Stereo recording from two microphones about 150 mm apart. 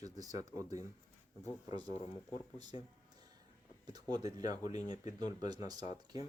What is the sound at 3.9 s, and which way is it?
Speech, 25° right (ahead or behind).